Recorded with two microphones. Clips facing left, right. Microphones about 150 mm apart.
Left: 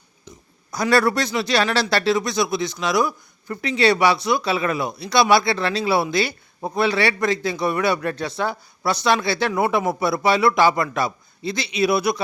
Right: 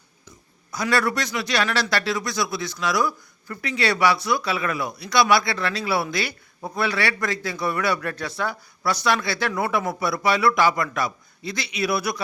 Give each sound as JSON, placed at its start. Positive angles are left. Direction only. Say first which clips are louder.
{"t": 0.7, "sound": "speech", "louder": "left 5 dB", "side_deg": 35}